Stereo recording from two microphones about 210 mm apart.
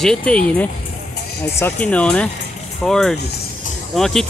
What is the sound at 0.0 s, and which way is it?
Speech, 5° left (ahead or behind).